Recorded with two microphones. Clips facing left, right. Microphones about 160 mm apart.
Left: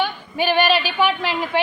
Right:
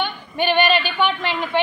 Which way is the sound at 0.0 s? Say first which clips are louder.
Left 1 dB; 5° left (ahead or behind).